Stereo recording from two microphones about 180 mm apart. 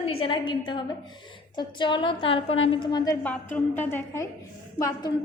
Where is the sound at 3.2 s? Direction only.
10° left (ahead or behind).